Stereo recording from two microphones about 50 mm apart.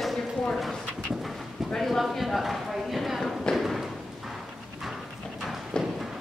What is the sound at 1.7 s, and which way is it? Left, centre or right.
Speech, centre.